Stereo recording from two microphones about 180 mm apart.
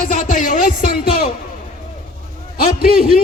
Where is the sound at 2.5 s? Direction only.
55° left (ahead or behind).